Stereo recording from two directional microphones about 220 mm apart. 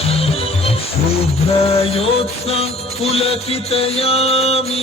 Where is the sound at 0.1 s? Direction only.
25° left (ahead or behind).